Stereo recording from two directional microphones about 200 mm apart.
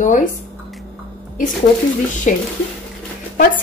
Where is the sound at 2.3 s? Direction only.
40° left (ahead or behind).